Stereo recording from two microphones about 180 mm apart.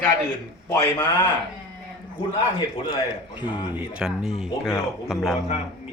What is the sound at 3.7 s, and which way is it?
Speech, 5° right (ahead or behind).